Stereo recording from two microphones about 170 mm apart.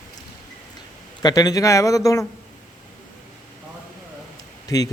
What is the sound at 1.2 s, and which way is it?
Speech, 20° left (ahead or behind).